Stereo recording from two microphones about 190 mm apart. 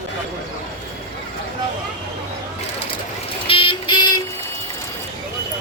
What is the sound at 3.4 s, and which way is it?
Vehicle, 25° left (ahead or behind).